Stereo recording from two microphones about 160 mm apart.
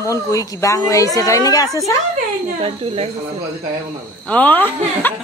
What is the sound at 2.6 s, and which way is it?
Speech, 40° right (ahead or behind).